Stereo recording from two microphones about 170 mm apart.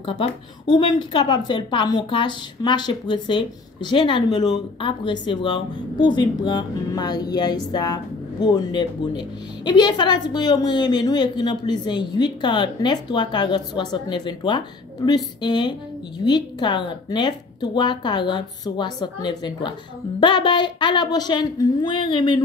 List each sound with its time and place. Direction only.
0.0 s a woman's voice: 30° left (ahead or behind)